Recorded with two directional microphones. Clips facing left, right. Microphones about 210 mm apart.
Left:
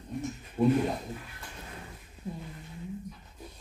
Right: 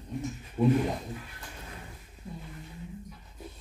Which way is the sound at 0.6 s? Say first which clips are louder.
Even; 10° left (ahead or behind).